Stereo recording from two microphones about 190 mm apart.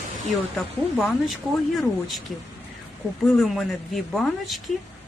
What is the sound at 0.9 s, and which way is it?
Speech, centre (ahead or behind).